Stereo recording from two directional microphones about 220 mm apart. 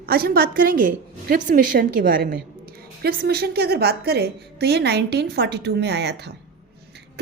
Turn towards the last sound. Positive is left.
turn(degrees=-50)  # may be behind; listen again after turning